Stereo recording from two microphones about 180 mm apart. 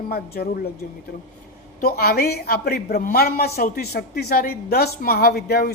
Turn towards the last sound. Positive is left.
turn(degrees=60)  # may be behind; listen again after turning